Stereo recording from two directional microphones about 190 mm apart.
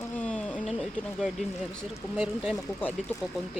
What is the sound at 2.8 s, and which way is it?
Speech, 10° left (ahead or behind).